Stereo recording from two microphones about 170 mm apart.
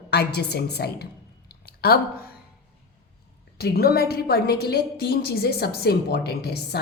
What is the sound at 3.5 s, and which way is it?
A woman's voice, 65° left (ahead or behind).